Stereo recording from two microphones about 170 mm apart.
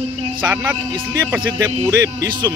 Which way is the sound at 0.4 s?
10° right (ahead or behind).